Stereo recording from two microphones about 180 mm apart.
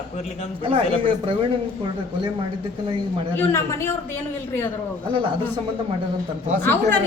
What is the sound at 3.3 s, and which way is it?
Speech, 15° left (ahead or behind).